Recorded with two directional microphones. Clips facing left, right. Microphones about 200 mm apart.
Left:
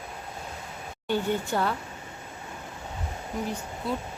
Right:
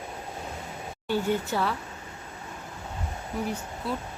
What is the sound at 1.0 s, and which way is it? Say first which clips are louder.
Speech: even; 5° right (ahead or behind).